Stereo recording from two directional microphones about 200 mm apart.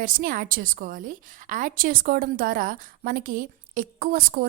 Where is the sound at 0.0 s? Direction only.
45° right (ahead or behind).